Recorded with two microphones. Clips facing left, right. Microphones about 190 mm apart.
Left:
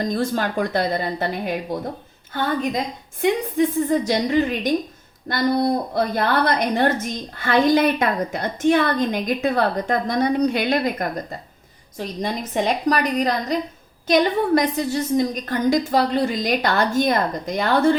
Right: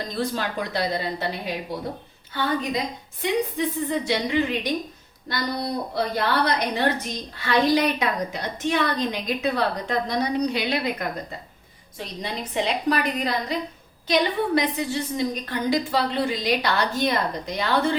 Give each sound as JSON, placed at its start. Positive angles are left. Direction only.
{"t": 0.0, "sound": "a woman's voice", "side_deg": 50}